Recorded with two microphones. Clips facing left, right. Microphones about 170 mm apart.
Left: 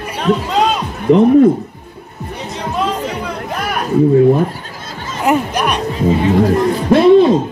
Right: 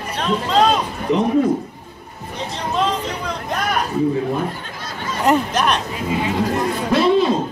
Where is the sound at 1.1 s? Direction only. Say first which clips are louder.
Left 9 dB; 55° left (ahead or behind).